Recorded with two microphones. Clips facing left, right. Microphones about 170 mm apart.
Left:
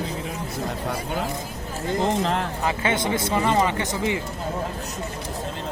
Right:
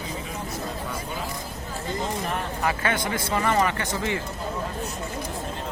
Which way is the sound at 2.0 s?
75° left (ahead or behind).